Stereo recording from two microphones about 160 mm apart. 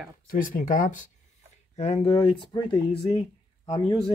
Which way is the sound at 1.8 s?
35° left (ahead or behind).